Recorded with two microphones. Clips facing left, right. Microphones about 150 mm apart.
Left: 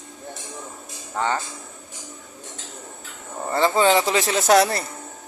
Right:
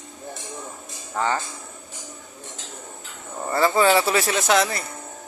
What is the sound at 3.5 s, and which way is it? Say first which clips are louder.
Speech: even; 25° left (ahead or behind).